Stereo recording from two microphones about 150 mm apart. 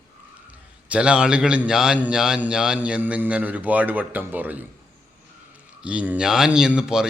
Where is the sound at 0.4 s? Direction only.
10° right (ahead or behind).